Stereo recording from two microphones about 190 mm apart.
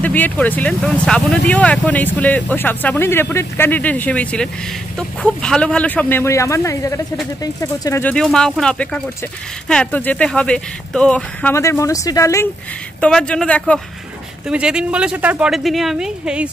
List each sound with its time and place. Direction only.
0.0 s speech: 10° left (ahead or behind)
11.5 s speech: 15° left (ahead or behind)
14.5 s speech: 5° right (ahead or behind)